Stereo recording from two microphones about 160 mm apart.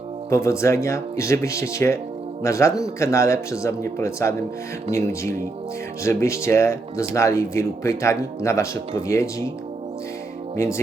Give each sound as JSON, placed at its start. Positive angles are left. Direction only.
{"t": 0.3, "sound": "speech", "side_deg": 15}
{"t": 10.6, "sound": "speech", "side_deg": 15}